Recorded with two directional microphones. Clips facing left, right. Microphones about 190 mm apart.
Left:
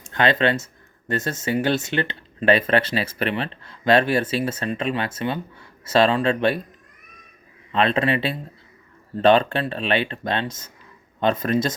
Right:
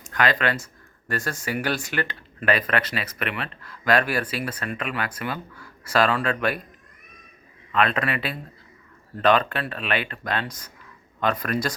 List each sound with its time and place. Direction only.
0.0 s speech: 25° left (ahead or behind)
7.7 s speech: 25° left (ahead or behind)